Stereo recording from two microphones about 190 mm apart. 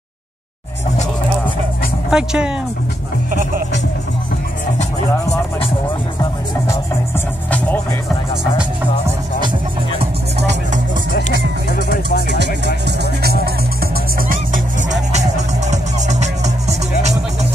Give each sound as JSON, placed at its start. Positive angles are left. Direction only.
{"t": 2.0, "sound": "speech", "side_deg": -5}
{"t": 7.5, "sound": "music", "side_deg": 10}
{"t": 11.2, "sound": "music", "side_deg": 50}
{"t": 12.3, "sound": "music", "side_deg": -65}
{"t": 14.3, "sound": "music", "side_deg": -40}